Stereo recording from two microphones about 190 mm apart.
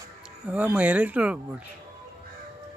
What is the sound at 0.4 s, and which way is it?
Speech, 5° right (ahead or behind).